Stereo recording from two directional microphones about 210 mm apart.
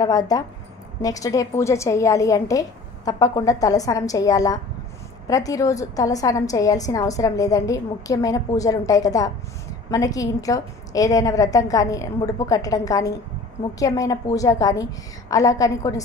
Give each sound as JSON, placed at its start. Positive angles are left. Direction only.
{"t": 0.0, "sound": "a woman's voice", "side_deg": 15}